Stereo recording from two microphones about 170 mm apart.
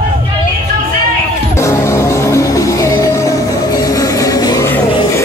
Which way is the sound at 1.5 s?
15° left (ahead or behind).